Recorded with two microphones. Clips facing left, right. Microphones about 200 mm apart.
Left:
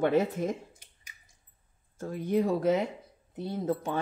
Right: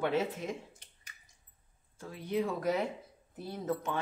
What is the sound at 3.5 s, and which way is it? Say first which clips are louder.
Speech: left 4 dB; 30° left (ahead or behind).